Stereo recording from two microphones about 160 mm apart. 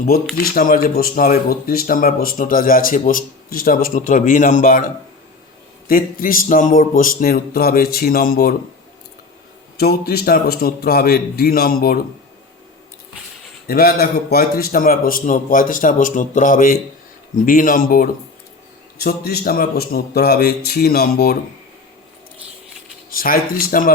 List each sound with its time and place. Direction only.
0.5 s speech: 65° left (ahead or behind)
5.9 s speech: 60° left (ahead or behind)
9.7 s a man's voice: 75° left (ahead or behind)
13.7 s speech: 75° left (ahead or behind)
18.9 s a man's voice: 75° left (ahead or behind)
23.0 s speech: 65° left (ahead or behind)